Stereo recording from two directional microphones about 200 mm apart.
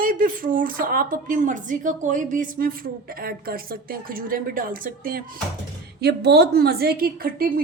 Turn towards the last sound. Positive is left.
turn(degrees=-45)  # may be behind; listen again after turning